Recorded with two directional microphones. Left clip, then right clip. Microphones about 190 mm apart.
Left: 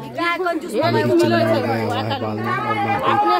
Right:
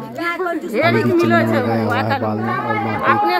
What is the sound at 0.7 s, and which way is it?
Speech, centre (ahead or behind).